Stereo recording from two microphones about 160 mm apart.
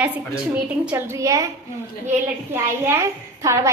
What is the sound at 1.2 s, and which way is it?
Speech, 20° right (ahead or behind).